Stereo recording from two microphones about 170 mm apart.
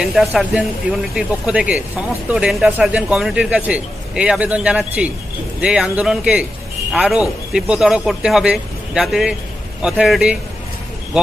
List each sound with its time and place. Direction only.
0.0 s speech: centre (ahead or behind)